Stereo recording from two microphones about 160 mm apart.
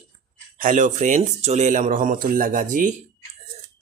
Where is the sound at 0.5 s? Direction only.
55° right (ahead or behind).